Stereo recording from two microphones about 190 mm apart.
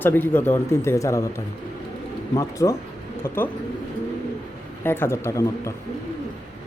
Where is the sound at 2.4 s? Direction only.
15° left (ahead or behind).